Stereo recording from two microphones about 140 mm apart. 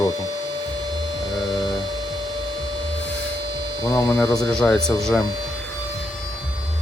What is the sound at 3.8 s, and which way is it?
Speech, 25° left (ahead or behind).